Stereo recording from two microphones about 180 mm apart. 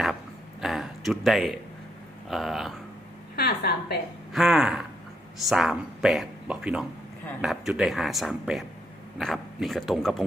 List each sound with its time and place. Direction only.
0.6 s a sound: centre (ahead or behind)
2.3 s speech: centre (ahead or behind)
3.3 s a woman's voice: 65° left (ahead or behind)
4.3 s speech: centre (ahead or behind)